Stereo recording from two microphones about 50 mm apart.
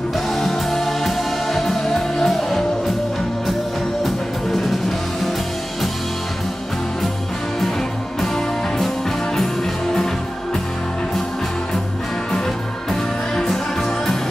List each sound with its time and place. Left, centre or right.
0.3 s music: centre
8.2 s music: centre
12.9 s music: centre